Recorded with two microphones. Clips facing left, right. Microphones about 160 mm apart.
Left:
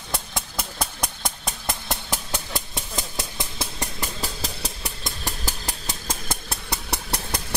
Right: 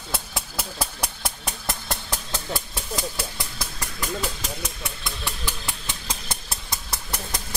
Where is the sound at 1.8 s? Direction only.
15° left (ahead or behind); by 7.4 s 65° left (ahead or behind).